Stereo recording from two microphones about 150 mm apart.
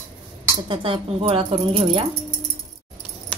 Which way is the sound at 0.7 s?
35° right (ahead or behind).